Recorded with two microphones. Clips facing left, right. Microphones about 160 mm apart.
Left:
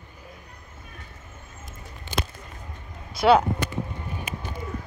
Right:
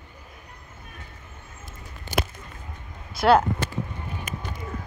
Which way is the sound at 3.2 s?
Centre (ahead or behind).